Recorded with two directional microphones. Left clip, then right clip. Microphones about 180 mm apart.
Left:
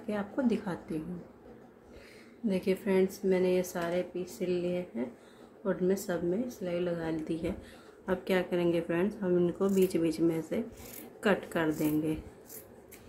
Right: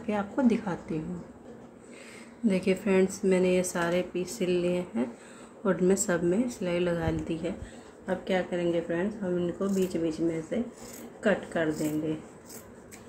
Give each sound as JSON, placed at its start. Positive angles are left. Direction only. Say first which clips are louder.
{"t": 0.0, "sound": "a woman's voice", "louder": "right 5 dB", "side_deg": -5}
{"t": 2.4, "sound": "speech", "louder": "right 4 dB", "side_deg": -10}
{"t": 8.1, "sound": "speech", "louder": "right 1 dB", "side_deg": 15}